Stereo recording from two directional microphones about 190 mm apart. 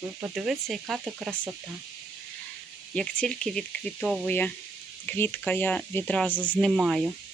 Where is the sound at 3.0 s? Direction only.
5° left (ahead or behind).